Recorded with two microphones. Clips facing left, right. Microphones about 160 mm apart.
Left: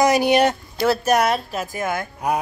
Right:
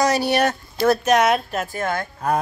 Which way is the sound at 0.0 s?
15° left (ahead or behind).